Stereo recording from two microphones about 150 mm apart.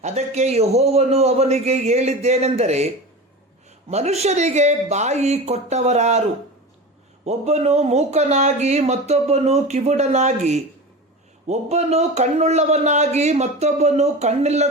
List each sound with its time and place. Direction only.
0.0 s speech: 50° right (ahead or behind)
7.3 s speech: 45° right (ahead or behind)